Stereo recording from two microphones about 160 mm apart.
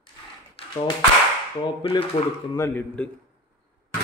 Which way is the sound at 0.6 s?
35° left (ahead or behind).